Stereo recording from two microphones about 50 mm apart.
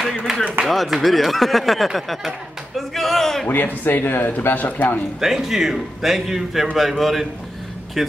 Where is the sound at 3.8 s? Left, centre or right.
Left.